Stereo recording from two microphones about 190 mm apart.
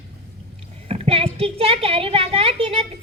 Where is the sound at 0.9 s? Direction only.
30° right (ahead or behind).